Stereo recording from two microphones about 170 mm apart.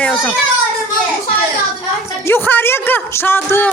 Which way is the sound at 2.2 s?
10° left (ahead or behind).